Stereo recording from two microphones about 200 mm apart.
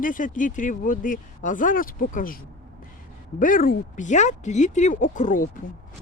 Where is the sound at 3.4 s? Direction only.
45° left (ahead or behind).